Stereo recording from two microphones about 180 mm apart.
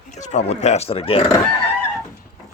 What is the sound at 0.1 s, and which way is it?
Speech, 40° left (ahead or behind).